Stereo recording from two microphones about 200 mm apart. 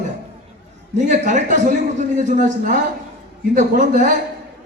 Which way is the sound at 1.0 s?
35° right (ahead or behind).